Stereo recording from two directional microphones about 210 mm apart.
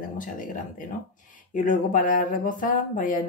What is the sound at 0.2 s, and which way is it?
Speech, 40° left (ahead or behind).